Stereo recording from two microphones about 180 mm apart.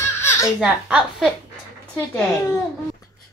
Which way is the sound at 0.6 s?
5° right (ahead or behind).